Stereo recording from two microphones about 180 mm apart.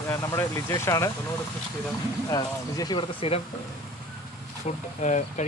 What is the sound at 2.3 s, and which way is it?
Speech, 20° left (ahead or behind).